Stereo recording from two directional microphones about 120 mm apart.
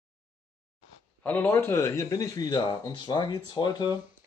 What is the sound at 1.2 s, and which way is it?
Speech, 15° left (ahead or behind).